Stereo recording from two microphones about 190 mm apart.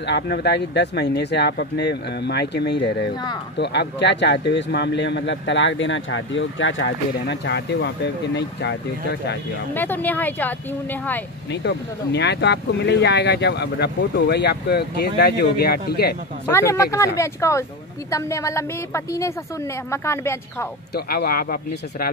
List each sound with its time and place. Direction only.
0.0 s a man's voice: 60° left (ahead or behind)
7.2 s speech: 65° left (ahead or behind)
9.8 s speech: 10° left (ahead or behind)
11.5 s speech: 60° left (ahead or behind)
16.4 s speech: 15° left (ahead or behind)
20.9 s speech: 55° left (ahead or behind)